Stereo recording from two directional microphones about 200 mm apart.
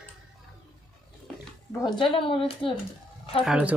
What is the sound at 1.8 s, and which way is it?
Speech, 25° left (ahead or behind).